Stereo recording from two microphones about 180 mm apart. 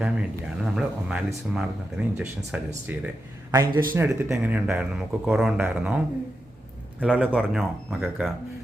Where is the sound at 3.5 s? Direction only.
20° right (ahead or behind).